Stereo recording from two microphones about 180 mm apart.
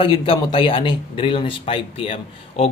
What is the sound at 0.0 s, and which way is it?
Speech, 30° left (ahead or behind).